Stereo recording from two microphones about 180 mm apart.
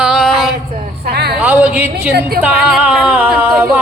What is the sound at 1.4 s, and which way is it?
Speech, 10° right (ahead or behind).